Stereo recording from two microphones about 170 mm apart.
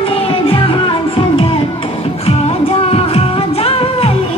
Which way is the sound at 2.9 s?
35° left (ahead or behind).